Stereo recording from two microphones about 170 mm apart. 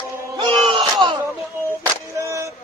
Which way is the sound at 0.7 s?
30° right (ahead or behind).